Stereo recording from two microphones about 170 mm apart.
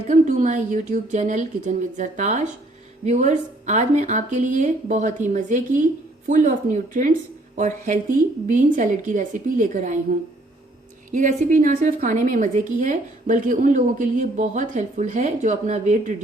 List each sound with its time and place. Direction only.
0.1 s a woman's voice: 45° right (ahead or behind)
11.1 s a woman's voice: 50° right (ahead or behind)